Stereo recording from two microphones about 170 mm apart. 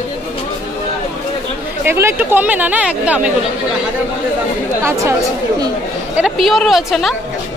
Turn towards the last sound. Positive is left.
turn(degrees=0)  # may be behind; listen again after turning